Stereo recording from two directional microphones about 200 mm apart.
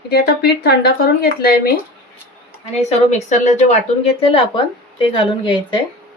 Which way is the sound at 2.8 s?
35° left (ahead or behind).